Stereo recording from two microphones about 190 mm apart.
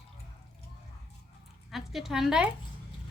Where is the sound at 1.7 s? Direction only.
Centre (ahead or behind).